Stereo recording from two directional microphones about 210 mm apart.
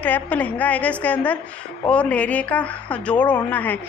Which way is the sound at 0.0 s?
10° left (ahead or behind).